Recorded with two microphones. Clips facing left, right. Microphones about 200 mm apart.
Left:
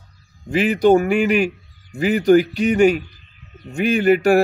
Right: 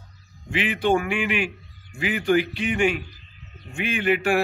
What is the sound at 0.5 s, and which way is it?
Speech, 40° left (ahead or behind).